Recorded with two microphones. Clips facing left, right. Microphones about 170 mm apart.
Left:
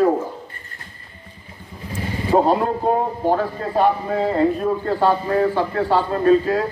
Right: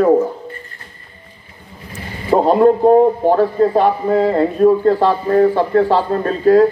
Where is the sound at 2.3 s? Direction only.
50° right (ahead or behind).